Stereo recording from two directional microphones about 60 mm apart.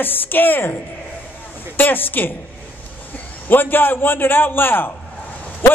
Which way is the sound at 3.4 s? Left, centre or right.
Left.